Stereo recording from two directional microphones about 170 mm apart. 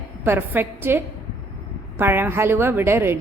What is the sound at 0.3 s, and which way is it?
A woman's voice, 10° right (ahead or behind).